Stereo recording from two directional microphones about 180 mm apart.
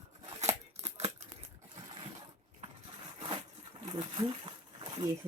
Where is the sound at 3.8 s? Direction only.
30° right (ahead or behind).